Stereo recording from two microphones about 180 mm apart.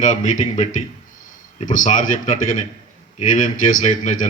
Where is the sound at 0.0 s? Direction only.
45° left (ahead or behind).